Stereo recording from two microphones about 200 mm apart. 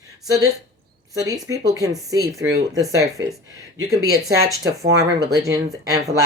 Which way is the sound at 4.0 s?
90° right.